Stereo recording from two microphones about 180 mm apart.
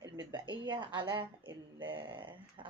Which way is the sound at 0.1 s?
25° right (ahead or behind).